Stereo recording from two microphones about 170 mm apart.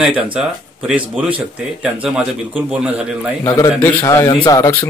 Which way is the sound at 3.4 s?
20° left (ahead or behind).